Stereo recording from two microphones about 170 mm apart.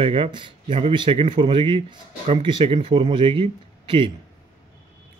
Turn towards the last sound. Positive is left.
turn(degrees=-30)  # may be behind; listen again after turning